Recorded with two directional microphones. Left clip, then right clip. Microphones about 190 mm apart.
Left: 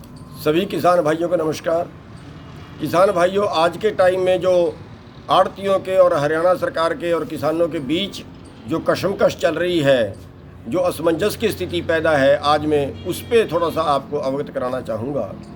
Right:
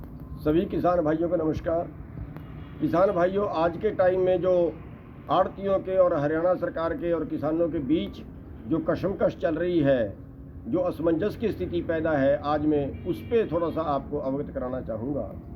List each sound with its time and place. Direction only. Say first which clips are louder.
0.4 s speech: left 7 dB; 15° left (ahead or behind)
2.8 s speech: left 7 dB; 15° left (ahead or behind)